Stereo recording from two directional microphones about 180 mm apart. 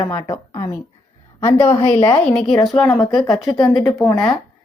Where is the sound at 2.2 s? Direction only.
5° left (ahead or behind).